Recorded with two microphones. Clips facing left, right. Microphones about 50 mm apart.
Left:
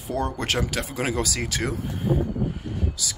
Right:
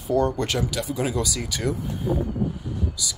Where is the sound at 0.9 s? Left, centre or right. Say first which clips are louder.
Left 1 dB; left.